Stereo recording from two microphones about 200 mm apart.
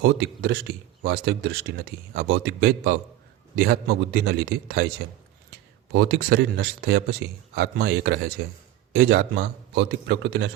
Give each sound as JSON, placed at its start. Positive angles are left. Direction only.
{"t": 0.0, "sound": "a man's voice", "side_deg": -55}
{"t": 5.9, "sound": "a man's voice", "side_deg": -55}